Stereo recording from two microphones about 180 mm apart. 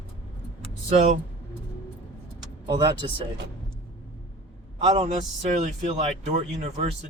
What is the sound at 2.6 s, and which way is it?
Speech, 25° right (ahead or behind).